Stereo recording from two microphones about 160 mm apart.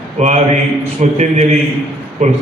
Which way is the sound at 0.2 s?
45° right (ahead or behind).